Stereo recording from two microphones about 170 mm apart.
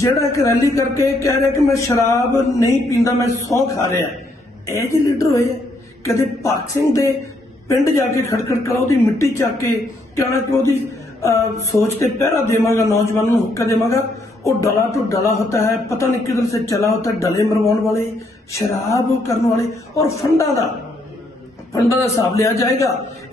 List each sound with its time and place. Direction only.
0.0 s speech: 15° left (ahead or behind)
7.6 s speech: 15° left (ahead or behind)
21.8 s speech: 15° left (ahead or behind)